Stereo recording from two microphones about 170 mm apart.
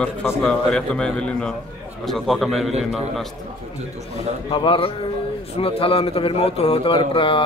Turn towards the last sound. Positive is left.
turn(degrees=30)  # may be behind; listen again after turning